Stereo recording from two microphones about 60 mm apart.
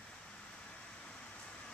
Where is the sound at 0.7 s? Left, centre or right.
Centre.